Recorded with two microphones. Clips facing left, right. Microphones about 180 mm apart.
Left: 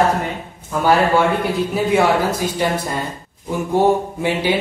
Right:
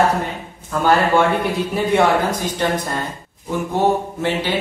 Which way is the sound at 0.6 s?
10° left (ahead or behind).